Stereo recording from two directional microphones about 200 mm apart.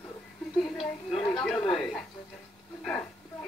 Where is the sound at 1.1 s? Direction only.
25° left (ahead or behind).